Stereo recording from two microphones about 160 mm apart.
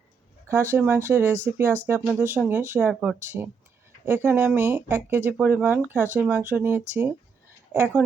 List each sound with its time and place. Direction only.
0.4 s speech: 15° right (ahead or behind)